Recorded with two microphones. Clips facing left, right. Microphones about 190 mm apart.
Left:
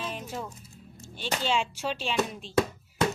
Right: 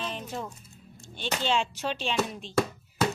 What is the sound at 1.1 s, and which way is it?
Speech, 5° left (ahead or behind).